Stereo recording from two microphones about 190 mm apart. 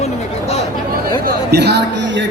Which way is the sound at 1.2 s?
60° right (ahead or behind).